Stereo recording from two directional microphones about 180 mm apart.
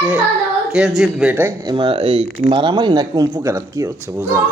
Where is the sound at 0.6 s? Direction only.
5° right (ahead or behind).